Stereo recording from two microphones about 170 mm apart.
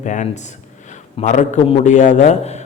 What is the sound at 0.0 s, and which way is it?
A man's voice, 45° left (ahead or behind).